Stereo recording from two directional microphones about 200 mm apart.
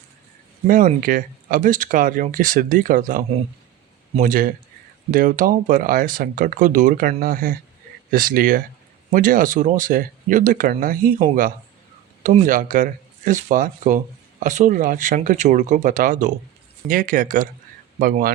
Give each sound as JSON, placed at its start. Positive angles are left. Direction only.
{"t": 0.7, "sound": "speech", "side_deg": -45}
{"t": 12.2, "sound": "speech", "side_deg": -40}